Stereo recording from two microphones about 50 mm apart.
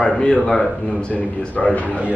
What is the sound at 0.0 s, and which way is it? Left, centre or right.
Speech, centre.